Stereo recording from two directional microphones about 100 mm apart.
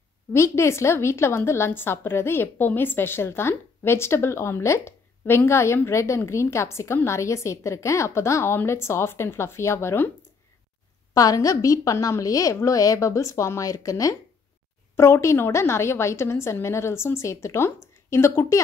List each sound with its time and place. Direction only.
0.3 s a woman's voice: 25° left (ahead or behind)
11.1 s a woman's voice: 35° left (ahead or behind)